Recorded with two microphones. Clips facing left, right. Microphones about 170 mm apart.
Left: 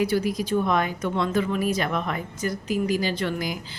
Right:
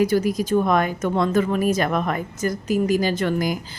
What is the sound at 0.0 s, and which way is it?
Speech, 45° right (ahead or behind).